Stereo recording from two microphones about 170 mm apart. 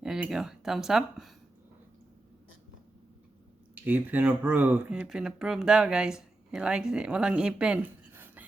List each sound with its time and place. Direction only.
0.0 s speech: 5° right (ahead or behind)
3.8 s speech: 10° right (ahead or behind)